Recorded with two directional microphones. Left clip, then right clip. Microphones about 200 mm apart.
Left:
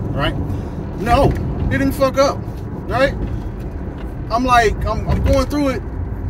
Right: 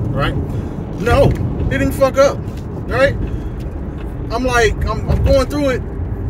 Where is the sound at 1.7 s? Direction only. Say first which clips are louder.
Right 2 dB; 15° right (ahead or behind).